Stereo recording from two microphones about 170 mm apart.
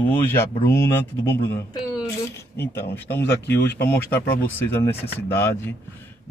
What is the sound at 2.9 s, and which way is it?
Speech, 15° left (ahead or behind).